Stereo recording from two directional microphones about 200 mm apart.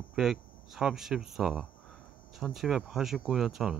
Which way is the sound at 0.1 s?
Centre (ahead or behind).